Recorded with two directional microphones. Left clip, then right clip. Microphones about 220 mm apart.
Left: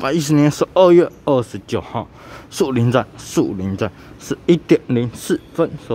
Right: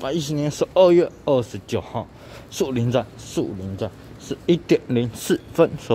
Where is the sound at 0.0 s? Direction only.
20° left (ahead or behind).